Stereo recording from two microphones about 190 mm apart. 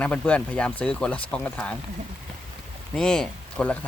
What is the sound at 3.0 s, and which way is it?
Speech, 5° left (ahead or behind).